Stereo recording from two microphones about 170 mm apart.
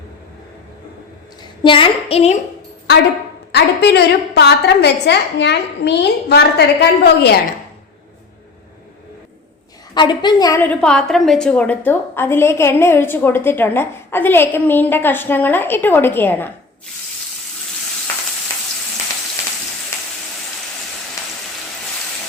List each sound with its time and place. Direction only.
1.6 s a woman's voice: 30° left (ahead or behind)
3.5 s a woman's voice: 80° left
9.9 s a woman's voice: 25° left (ahead or behind)
10.6 s a woman's voice: 5° left (ahead or behind)